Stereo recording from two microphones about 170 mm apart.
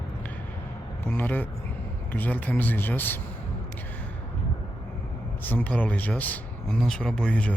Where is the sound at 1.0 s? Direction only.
10° left (ahead or behind).